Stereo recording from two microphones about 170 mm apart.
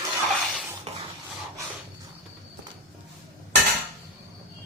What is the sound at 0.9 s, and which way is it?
Filing, 35° right (ahead or behind).